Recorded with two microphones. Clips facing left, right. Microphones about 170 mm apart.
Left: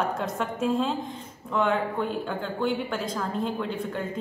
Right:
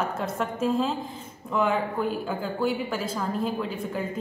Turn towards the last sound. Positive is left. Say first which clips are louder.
# even
turn(degrees=-5)  # may be behind; listen again after turning